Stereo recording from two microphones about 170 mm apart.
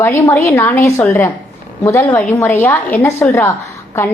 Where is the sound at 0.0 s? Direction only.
15° left (ahead or behind).